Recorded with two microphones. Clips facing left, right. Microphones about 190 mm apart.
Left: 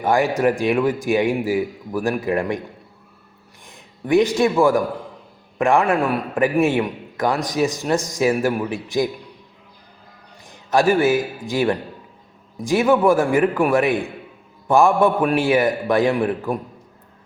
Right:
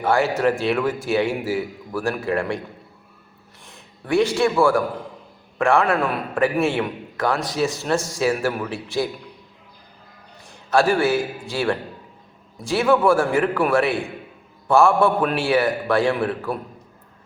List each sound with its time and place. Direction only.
0.0 s a man's voice: 15° left (ahead or behind)
3.7 s a man's voice: 15° left (ahead or behind)
10.5 s a man's voice: 20° left (ahead or behind)